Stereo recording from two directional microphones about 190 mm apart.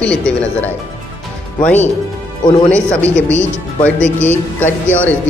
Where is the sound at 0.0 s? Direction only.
5° left (ahead or behind).